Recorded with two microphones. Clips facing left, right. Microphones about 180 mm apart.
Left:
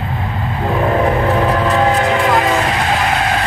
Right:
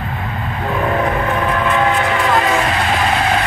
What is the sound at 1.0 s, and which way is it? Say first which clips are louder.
Train: left 4 dB; 35° left (ahead or behind).